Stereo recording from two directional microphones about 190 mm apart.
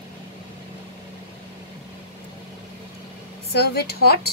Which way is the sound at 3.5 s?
60° left (ahead or behind).